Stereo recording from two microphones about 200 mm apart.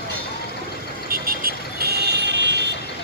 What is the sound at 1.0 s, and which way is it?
Vehicle, 50° right (ahead or behind).